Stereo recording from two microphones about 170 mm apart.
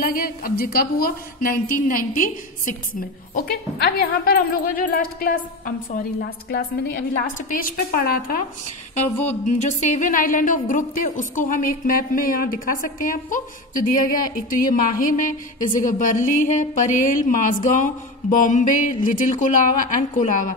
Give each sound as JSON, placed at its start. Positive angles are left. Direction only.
{"t": 0.0, "sound": "speech", "side_deg": 60}
{"t": 3.3, "sound": "speech", "side_deg": 65}
{"t": 9.3, "sound": "a woman's voice", "side_deg": 45}